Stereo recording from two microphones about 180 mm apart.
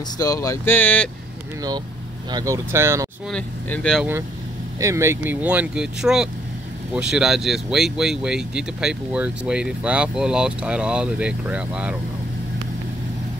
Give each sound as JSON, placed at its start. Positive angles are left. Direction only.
{"t": 0.2, "sound": "speech", "side_deg": 20}
{"t": 2.3, "sound": "speech", "side_deg": -20}
{"t": 3.3, "sound": "speech", "side_deg": 5}
{"t": 4.7, "sound": "speech", "side_deg": -15}